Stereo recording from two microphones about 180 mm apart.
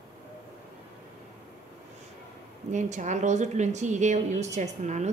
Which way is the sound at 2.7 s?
45° right (ahead or behind).